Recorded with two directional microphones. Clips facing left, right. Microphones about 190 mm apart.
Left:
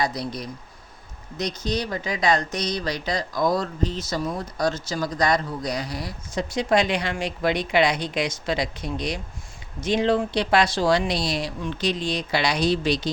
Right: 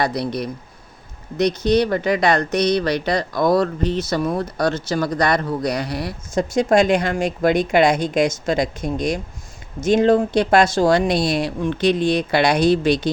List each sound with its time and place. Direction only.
0.0 s speech: 65° right (ahead or behind)
6.3 s speech: 45° right (ahead or behind)